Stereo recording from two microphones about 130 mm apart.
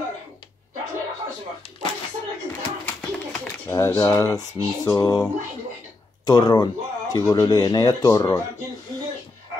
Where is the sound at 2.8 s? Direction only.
15° left (ahead or behind).